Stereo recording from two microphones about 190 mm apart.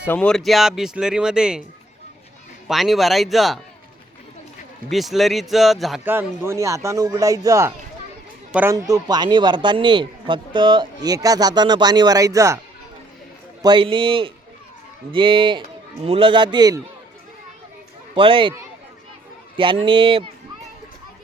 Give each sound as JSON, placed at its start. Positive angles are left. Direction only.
{"t": 0.1, "sound": "speech", "side_deg": 5}
{"t": 2.6, "sound": "speech", "side_deg": 0}
{"t": 4.9, "sound": "speech", "side_deg": 0}
{"t": 6.1, "sound": "a man's voice", "side_deg": -15}
{"t": 13.6, "sound": "a man's voice", "side_deg": -25}
{"t": 18.1, "sound": "speech", "side_deg": -25}
{"t": 19.5, "sound": "a man's voice", "side_deg": -25}